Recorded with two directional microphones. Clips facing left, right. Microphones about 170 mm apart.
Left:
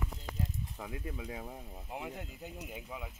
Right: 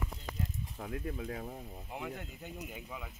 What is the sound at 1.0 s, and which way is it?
Speech, 10° left (ahead or behind).